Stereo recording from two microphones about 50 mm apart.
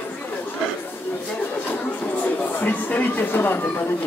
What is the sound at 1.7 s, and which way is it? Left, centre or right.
Speech, left.